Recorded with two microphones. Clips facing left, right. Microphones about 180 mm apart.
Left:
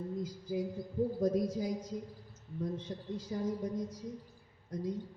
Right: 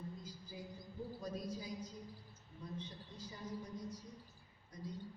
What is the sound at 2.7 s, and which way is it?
A woman's voice, 90° left.